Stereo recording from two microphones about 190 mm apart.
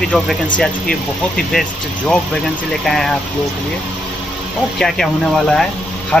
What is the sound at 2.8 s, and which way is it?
Speech, centre (ahead or behind).